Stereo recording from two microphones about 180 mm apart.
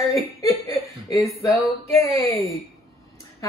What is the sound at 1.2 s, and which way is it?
Speech, 15° left (ahead or behind).